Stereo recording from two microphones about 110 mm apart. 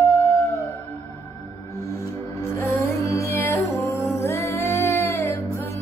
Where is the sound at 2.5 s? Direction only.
20° left (ahead or behind).